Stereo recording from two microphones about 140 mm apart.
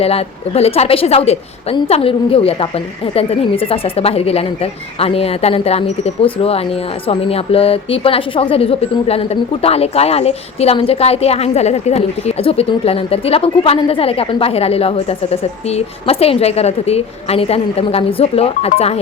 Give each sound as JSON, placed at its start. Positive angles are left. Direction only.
{"t": 0.0, "sound": "a woman's voice", "side_deg": 45}